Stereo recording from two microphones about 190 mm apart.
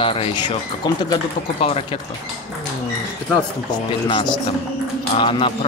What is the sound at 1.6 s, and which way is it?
Speech, 30° left (ahead or behind).